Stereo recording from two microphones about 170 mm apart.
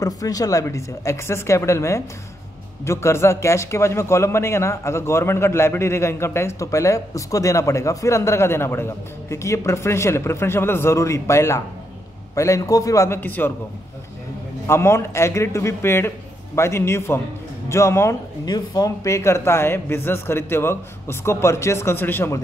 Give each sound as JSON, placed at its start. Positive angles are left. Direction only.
{"t": 0.0, "sound": "a man's voice", "side_deg": 20}
{"t": 14.7, "sound": "a man's voice", "side_deg": 15}